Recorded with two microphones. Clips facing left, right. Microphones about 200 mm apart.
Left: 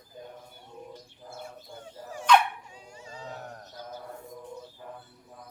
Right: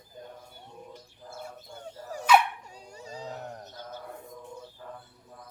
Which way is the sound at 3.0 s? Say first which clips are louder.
Right 3 dB; 35° right (ahead or behind).